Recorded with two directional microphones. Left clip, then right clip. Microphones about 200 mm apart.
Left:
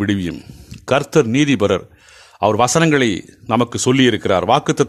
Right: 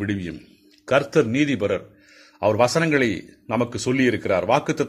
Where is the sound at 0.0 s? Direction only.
40° left (ahead or behind).